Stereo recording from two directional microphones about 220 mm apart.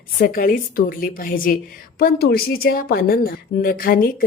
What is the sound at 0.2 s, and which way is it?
A woman's voice, 40° left (ahead or behind).